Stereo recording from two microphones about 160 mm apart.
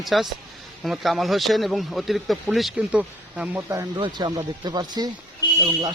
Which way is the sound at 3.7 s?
25° right (ahead or behind).